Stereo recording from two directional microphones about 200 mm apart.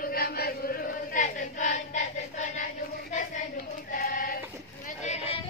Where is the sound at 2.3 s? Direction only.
35° left (ahead or behind).